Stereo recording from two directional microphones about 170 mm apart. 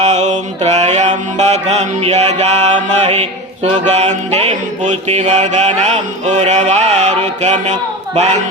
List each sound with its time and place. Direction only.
0.0 s mantra: 40° right (ahead or behind)
7.6 s a man's voice: 40° right (ahead or behind)